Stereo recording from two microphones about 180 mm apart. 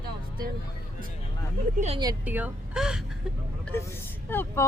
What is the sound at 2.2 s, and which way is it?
Speech, 10° right (ahead or behind).